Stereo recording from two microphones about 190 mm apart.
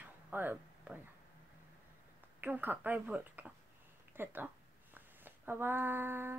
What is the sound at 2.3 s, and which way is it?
Speech, 10° right (ahead or behind).